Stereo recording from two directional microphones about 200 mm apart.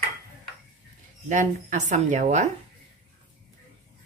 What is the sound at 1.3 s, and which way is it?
A woman's voice, 40° right (ahead or behind).